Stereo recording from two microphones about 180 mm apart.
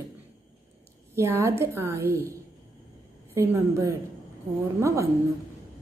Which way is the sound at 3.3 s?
15° right (ahead or behind).